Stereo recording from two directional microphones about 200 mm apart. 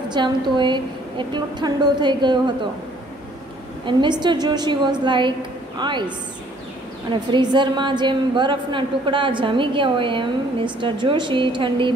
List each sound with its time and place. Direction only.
0.1 s a woman's voice: 25° right (ahead or behind)
3.8 s a woman's voice: 25° right (ahead or behind)
7.2 s a woman's voice: 20° right (ahead or behind)